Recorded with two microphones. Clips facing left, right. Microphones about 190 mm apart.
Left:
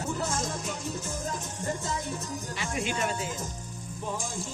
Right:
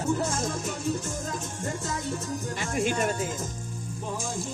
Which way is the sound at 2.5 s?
50° right (ahead or behind).